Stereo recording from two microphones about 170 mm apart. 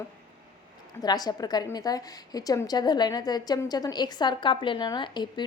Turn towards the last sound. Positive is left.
turn(degrees=25)  # may be behind; listen again after turning